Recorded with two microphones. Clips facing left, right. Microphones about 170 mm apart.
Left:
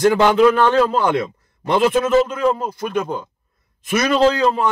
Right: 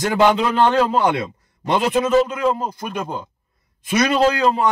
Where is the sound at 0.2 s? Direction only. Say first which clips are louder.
Left 2 dB; 20° right (ahead or behind).